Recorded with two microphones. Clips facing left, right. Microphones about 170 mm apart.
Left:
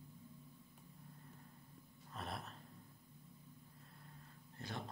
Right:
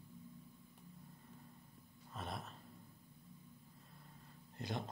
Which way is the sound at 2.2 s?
Centre (ahead or behind).